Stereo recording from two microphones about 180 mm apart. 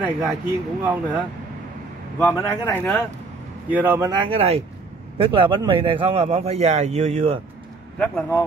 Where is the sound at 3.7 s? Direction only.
10° right (ahead or behind).